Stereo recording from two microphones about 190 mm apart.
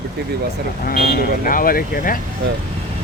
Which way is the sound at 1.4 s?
50° left (ahead or behind).